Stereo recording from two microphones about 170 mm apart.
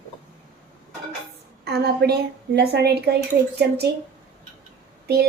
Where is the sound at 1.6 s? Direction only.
70° right (ahead or behind).